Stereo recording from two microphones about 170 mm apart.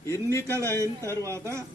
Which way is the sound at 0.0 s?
15° left (ahead or behind).